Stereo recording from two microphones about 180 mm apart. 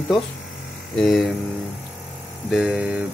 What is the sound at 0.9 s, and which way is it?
Speech, centre (ahead or behind).